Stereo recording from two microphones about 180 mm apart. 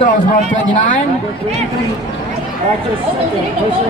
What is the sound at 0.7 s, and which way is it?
Speech, 45° left (ahead or behind).